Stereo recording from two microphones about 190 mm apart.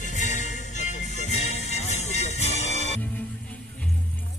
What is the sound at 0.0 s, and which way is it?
Music, 40° left (ahead or behind).